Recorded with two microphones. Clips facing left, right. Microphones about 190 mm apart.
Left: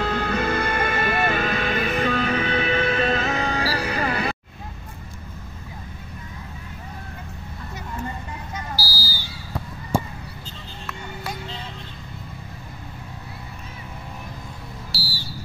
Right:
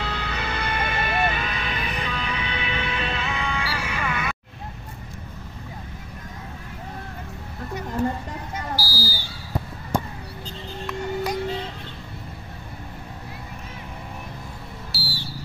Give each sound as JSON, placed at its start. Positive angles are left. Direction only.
{"t": 0.0, "sound": "music", "side_deg": 50}
{"t": 8.7, "sound": "a sound", "side_deg": -50}
{"t": 14.9, "sound": "smoke detector", "side_deg": 0}